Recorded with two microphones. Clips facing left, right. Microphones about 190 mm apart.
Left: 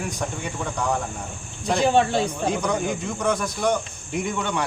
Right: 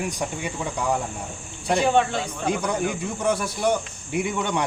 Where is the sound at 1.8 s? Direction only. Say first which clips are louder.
Left 3 dB; 35° left (ahead or behind).